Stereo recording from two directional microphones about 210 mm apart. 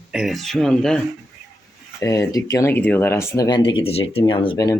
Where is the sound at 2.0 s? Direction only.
15° left (ahead or behind).